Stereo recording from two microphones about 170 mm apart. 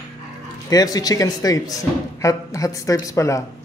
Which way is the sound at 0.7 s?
20° left (ahead or behind).